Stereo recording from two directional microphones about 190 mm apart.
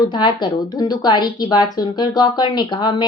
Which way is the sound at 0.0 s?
25° left (ahead or behind).